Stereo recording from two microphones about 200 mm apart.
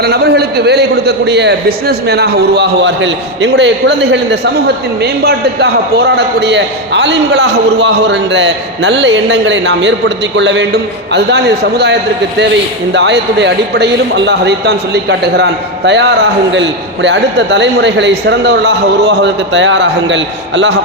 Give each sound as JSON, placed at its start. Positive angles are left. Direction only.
{"t": 0.0, "sound": "a man's voice", "side_deg": -55}